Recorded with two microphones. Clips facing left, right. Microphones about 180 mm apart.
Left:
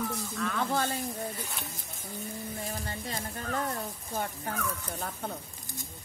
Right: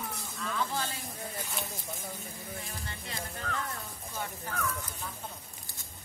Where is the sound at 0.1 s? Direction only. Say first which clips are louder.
Left 5 dB; 60° left (ahead or behind).